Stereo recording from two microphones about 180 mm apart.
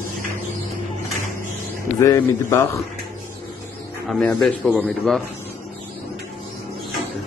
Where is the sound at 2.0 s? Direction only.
15° left (ahead or behind).